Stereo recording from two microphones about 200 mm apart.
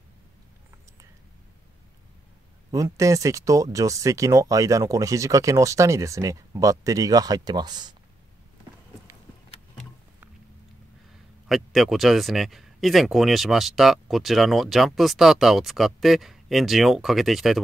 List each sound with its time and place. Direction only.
2.7 s speech: 15° right (ahead or behind)
11.4 s speech: centre (ahead or behind)